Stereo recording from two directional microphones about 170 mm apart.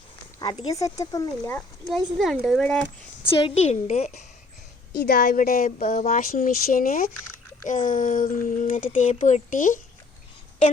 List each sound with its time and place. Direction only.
0.7 s speech: 20° left (ahead or behind)
1.5 s speech: 5° left (ahead or behind)
3.2 s a woman's voice: 35° left (ahead or behind)
5.0 s speech: 60° left (ahead or behind)